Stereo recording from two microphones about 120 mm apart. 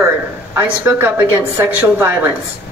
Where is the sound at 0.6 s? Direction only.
15° right (ahead or behind).